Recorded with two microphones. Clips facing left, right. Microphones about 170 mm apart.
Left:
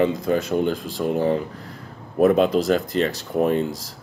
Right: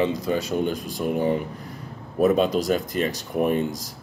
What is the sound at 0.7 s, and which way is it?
Speech, 15° right (ahead or behind).